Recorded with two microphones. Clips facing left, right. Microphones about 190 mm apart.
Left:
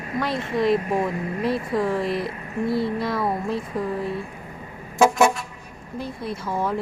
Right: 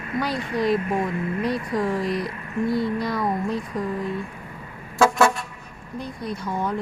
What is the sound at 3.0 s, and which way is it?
Speech, centre (ahead or behind).